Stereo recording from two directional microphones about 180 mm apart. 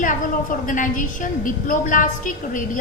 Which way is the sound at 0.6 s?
50° left (ahead or behind).